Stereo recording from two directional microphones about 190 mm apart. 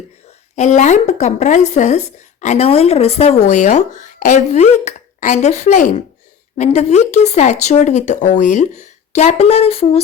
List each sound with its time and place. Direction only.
0.5 s a woman's voice: 40° left (ahead or behind)